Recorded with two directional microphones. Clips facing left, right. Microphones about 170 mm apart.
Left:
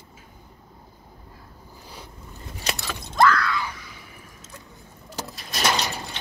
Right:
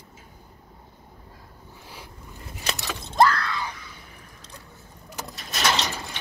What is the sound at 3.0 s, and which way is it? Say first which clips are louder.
Shatter: even; 30° right (ahead or behind).